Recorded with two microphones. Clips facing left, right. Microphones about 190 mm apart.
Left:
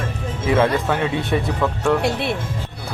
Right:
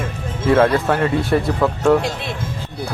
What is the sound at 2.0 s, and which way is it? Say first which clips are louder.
Speech: left 4 dB; 65° left (ahead or behind).